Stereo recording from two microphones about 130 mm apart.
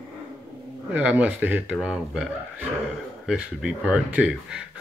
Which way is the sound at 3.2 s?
10° right (ahead or behind).